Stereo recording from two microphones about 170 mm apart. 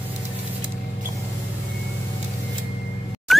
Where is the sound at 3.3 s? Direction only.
Centre (ahead or behind).